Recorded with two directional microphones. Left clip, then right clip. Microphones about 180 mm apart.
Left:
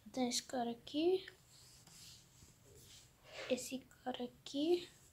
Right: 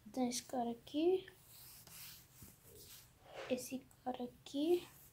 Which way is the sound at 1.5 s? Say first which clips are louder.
Right 2 dB; 35° right (ahead or behind).